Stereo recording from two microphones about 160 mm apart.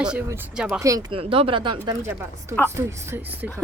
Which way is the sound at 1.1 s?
35° right (ahead or behind).